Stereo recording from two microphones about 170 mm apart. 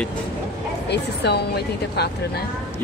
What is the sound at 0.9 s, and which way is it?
A woman's voice, 80° left.